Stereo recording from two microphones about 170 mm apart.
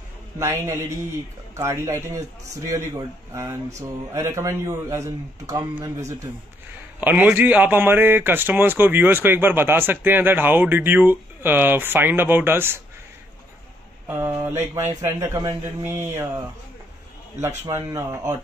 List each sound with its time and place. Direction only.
0.4 s a man's voice: 15° right (ahead or behind)
14.0 s a man's voice: 15° right (ahead or behind)
17.6 s speech: 20° right (ahead or behind)